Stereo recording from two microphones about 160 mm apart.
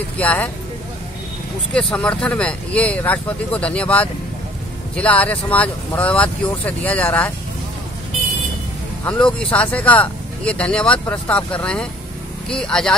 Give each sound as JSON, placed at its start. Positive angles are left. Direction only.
{"t": 0.2, "sound": "speech", "side_deg": 10}
{"t": 1.7, "sound": "speech", "side_deg": 5}
{"t": 9.0, "sound": "speech", "side_deg": 5}